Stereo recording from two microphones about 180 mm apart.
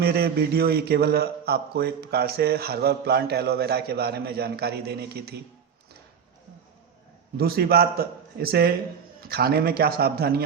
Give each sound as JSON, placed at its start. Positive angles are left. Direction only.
{"t": 0.0, "sound": "a man's voice", "side_deg": -60}
{"t": 7.3, "sound": "a man's voice", "side_deg": -60}